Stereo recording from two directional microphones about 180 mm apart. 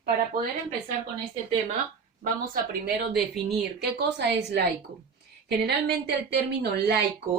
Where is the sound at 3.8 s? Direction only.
65° right (ahead or behind).